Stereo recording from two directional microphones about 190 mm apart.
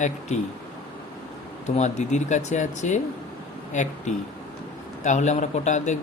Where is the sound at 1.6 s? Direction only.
35° left (ahead or behind).